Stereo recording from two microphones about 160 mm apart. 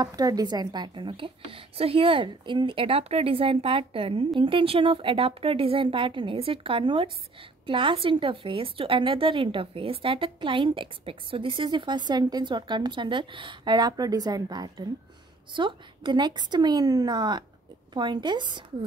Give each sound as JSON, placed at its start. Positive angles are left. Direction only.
{"t": 0.0, "sound": "a woman's voice", "side_deg": -25}